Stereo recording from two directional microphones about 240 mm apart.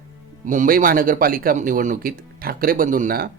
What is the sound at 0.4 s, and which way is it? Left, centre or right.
Speech, right.